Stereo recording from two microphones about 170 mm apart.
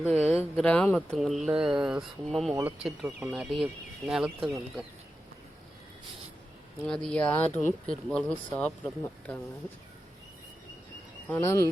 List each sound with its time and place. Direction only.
0.0 s speech: 5° right (ahead or behind)
0.5 s speech: 5° left (ahead or behind)
6.8 s speech: 5° left (ahead or behind)
11.3 s speech: 15° left (ahead or behind)